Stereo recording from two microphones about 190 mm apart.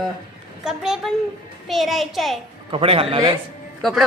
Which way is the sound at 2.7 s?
30° right (ahead or behind).